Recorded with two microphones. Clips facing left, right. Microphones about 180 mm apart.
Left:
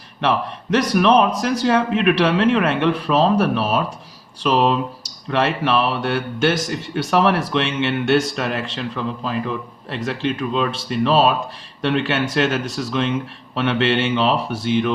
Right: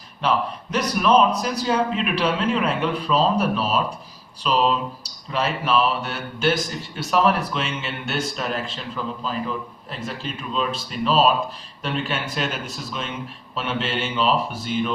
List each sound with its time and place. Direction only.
0.2 s a man's voice: 80° left